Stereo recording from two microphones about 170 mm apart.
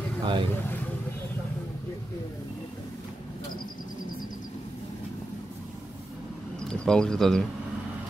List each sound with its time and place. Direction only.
0.2 s speech: 30° right (ahead or behind)
6.7 s speech: 5° left (ahead or behind)